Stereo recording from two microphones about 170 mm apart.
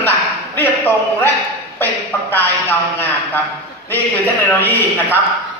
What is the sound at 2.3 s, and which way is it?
A man's voice, 10° left (ahead or behind).